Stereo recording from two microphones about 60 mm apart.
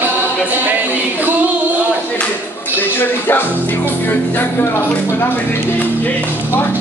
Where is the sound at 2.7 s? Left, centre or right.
Left.